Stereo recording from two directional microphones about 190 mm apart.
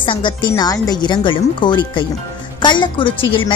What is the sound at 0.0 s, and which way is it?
A woman's voice, 25° left (ahead or behind).